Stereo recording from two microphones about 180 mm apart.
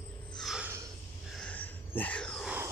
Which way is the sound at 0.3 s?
Centre (ahead or behind).